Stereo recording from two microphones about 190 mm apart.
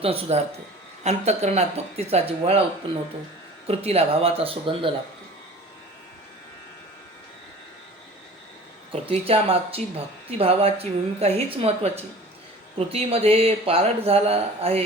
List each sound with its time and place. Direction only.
0.0 s speech: 30° right (ahead or behind)
3.8 s speech: 30° right (ahead or behind)
8.9 s speech: 30° right (ahead or behind)